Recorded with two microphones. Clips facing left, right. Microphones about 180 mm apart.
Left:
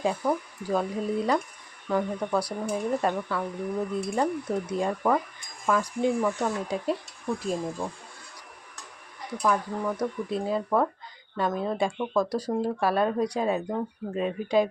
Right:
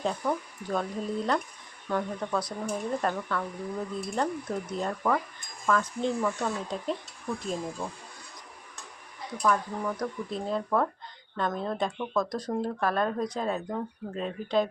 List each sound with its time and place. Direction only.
0.0 s speech: 10° left (ahead or behind)
9.4 s speech: 10° left (ahead or behind)